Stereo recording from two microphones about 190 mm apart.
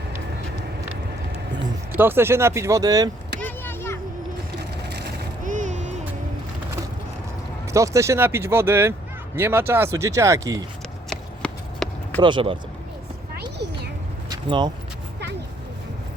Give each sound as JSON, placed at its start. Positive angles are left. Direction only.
{"t": 1.9, "sound": "speech", "side_deg": -10}
{"t": 3.4, "sound": "vehicle", "side_deg": 10}
{"t": 4.9, "sound": "a sound", "side_deg": -60}
{"t": 5.4, "sound": "music", "side_deg": -40}
{"t": 7.7, "sound": "speech", "side_deg": -15}
{"t": 11.1, "sound": "a sound", "side_deg": 5}
{"t": 12.2, "sound": "speech", "side_deg": -25}
{"t": 14.3, "sound": "vehicle", "side_deg": -25}